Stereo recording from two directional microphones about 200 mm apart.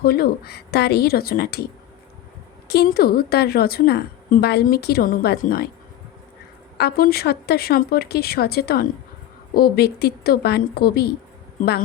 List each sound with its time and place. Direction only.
0.0 s a woman's voice: 50° left (ahead or behind)
2.6 s a woman's voice: 50° left (ahead or behind)
6.7 s a woman's voice: 50° left (ahead or behind)